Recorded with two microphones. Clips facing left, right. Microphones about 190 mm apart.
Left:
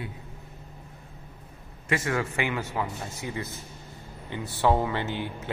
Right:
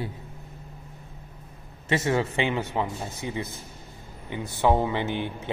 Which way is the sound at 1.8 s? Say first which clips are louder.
Right 3 dB; 25° right (ahead or behind).